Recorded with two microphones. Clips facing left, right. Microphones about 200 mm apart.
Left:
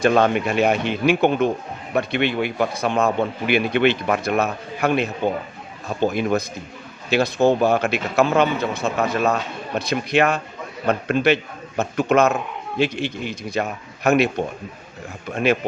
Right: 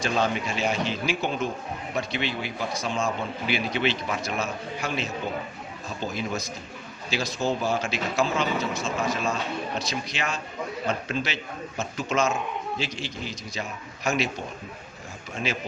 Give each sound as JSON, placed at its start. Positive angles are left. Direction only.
{"t": 0.0, "sound": "a man's voice", "side_deg": 60}
{"t": 15.5, "sound": "a man's voice", "side_deg": 60}